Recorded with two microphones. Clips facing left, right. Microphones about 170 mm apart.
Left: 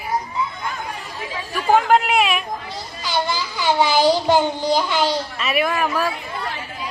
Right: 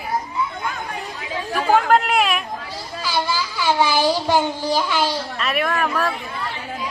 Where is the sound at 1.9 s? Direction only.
Centre (ahead or behind).